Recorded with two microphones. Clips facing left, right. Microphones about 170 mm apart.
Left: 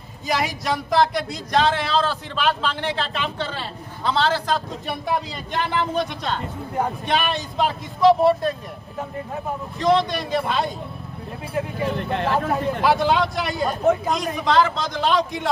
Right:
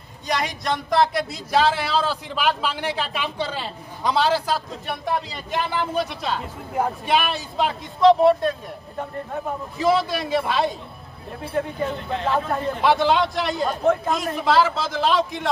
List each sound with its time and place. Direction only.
0.3 s speech: 5° left (ahead or behind)
12.0 s speech: 60° left (ahead or behind)
12.8 s speech: centre (ahead or behind)